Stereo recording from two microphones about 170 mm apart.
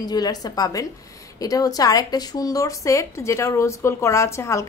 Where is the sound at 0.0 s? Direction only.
20° left (ahead or behind).